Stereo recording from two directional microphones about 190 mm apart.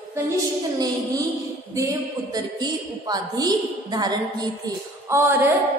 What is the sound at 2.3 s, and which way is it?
A woman's voice, 20° right (ahead or behind).